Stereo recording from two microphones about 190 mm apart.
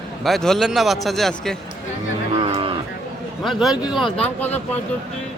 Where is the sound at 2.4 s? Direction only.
30° right (ahead or behind).